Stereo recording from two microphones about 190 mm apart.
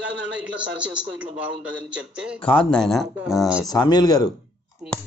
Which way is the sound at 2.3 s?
30° left (ahead or behind).